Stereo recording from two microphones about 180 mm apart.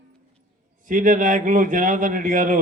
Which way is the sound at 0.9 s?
45° right (ahead or behind).